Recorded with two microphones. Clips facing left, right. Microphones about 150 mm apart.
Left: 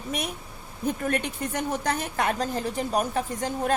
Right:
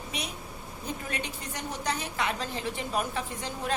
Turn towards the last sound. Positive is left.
turn(degrees=45)  # may be behind; listen again after turning